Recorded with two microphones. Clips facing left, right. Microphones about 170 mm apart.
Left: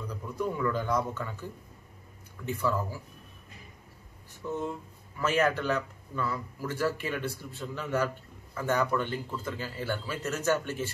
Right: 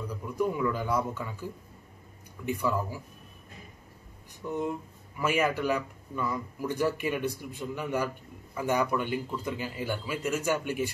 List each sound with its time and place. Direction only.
0.1 s a man's voice: 10° right (ahead or behind)
2.4 s speech: 15° right (ahead or behind)
4.4 s speech: 15° right (ahead or behind)